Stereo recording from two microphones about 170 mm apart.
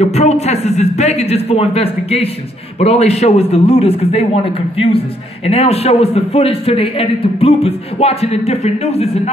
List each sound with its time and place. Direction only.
0.0 s a man's voice: 40° left (ahead or behind)